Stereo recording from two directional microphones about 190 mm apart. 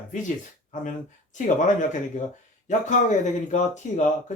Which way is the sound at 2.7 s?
40° left (ahead or behind).